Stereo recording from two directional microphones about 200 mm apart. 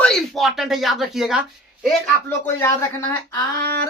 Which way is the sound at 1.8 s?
10° left (ahead or behind).